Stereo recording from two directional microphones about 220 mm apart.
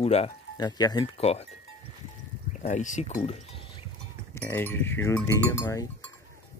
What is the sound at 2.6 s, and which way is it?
Speech, 35° left (ahead or behind).